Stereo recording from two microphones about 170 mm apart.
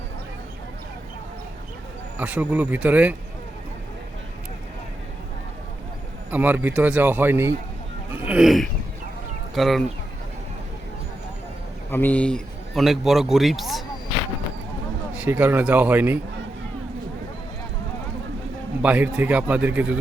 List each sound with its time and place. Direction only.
2.1 s speech: 10° right (ahead or behind)
6.3 s speech: 10° right (ahead or behind)
11.9 s a man's voice: 10° left (ahead or behind)
15.1 s speech: 10° right (ahead or behind)
18.8 s speech: 10° right (ahead or behind)